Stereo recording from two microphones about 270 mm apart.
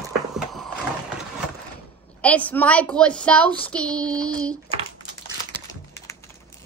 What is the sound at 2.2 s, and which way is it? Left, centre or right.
A woman's voice, centre.